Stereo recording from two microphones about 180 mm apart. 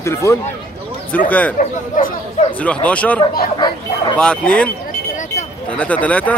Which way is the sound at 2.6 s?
5° left (ahead or behind).